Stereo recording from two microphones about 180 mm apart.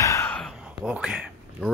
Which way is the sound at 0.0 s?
15° left (ahead or behind).